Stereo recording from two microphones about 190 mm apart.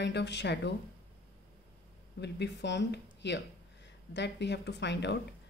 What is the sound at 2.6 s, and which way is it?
Speech, 65° left (ahead or behind).